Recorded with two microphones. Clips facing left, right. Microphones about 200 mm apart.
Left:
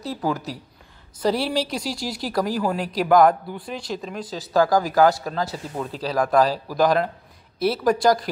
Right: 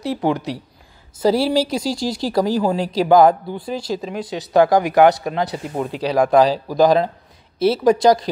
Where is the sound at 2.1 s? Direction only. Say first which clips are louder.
Right 5 dB; 25° right (ahead or behind).